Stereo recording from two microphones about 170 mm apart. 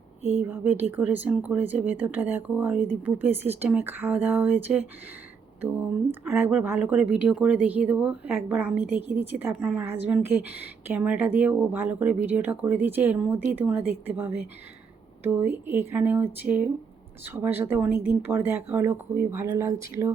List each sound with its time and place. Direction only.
0.4 s speech: 10° right (ahead or behind)
6.1 s speech: 10° right (ahead or behind)